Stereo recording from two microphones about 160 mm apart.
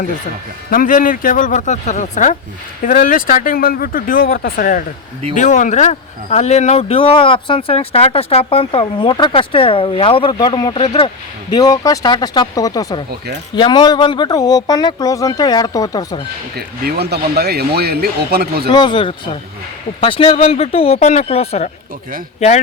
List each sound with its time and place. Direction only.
0.7 s speech: 60° left (ahead or behind)
2.8 s speech: 60° left (ahead or behind); by 11.1 s 35° left (ahead or behind)
11.5 s speech: 25° left (ahead or behind)
16.6 s speech: 85° right
18.7 s speech: 30° left (ahead or behind); by 22.6 s 45° left (ahead or behind)